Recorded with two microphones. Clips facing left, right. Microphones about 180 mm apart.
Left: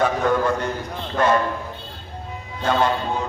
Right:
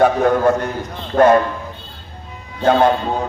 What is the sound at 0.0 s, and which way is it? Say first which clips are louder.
A man's voice: right 6 dB; 50° right (ahead or behind).